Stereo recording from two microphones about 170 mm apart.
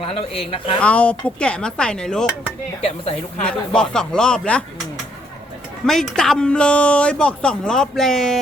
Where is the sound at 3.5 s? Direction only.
5° left (ahead or behind).